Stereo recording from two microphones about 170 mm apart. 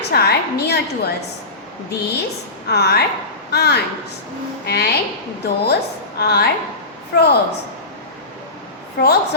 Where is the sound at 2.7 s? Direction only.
70° left (ahead or behind).